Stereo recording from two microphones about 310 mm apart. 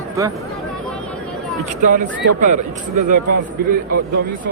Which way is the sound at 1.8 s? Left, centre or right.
Right.